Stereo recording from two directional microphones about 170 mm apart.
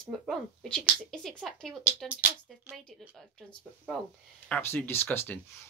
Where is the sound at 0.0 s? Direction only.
Centre (ahead or behind).